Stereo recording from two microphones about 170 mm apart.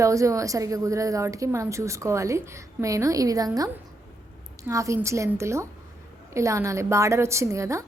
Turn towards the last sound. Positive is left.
turn(degrees=-15)  # may be behind; listen again after turning